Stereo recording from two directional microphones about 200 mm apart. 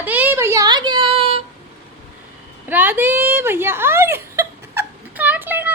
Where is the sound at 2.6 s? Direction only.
10° right (ahead or behind).